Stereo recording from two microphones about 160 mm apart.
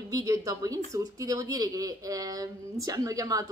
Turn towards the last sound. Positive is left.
turn(degrees=-20)  # may be behind; listen again after turning